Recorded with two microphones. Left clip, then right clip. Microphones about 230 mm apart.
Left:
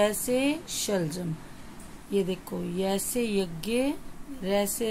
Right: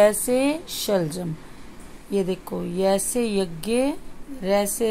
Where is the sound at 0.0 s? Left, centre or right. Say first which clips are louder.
Right 7 dB; centre.